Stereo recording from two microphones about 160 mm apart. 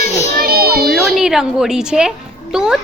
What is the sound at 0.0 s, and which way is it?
Children playing, 45° left (ahead or behind).